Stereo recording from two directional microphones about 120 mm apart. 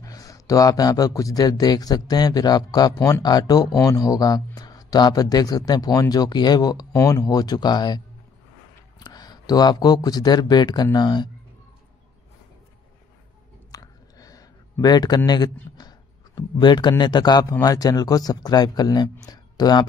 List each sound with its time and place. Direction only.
0.0 s speech: 30° left (ahead or behind)
9.0 s speech: 35° left (ahead or behind)
13.7 s a sound: 30° left (ahead or behind)
16.3 s speech: 35° left (ahead or behind)